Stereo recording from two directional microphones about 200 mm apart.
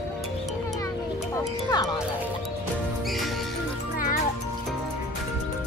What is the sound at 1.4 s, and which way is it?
Music, 15° left (ahead or behind).